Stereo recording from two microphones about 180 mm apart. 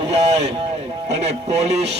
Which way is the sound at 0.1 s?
35° right (ahead or behind).